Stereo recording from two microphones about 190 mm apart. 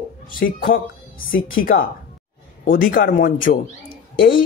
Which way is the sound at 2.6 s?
45° left (ahead or behind).